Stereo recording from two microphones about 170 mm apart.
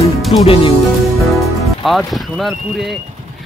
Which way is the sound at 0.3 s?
35° left (ahead or behind).